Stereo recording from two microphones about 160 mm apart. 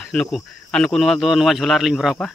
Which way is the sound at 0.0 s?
Centre (ahead or behind).